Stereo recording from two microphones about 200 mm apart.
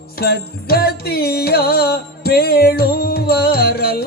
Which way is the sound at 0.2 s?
50° left (ahead or behind).